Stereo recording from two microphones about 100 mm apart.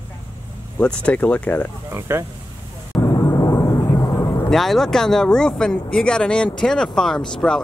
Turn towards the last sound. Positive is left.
turn(degrees=5)  # may be behind; listen again after turning